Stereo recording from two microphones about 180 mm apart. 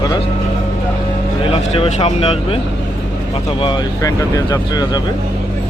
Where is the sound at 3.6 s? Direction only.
25° left (ahead or behind).